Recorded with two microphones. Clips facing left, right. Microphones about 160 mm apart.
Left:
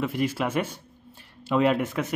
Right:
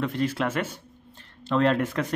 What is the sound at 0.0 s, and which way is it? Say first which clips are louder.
A man's voice: even; 10° left (ahead or behind).